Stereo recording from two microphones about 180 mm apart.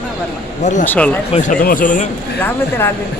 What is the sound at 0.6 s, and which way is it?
Speech, 40° left (ahead or behind).